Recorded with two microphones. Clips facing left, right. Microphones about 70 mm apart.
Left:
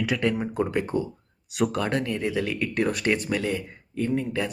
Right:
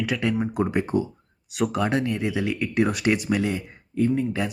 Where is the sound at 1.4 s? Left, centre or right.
Centre.